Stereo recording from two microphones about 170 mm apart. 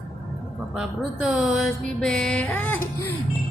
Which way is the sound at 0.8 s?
5° right (ahead or behind).